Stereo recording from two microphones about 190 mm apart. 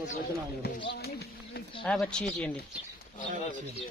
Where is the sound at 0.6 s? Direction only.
60° left (ahead or behind).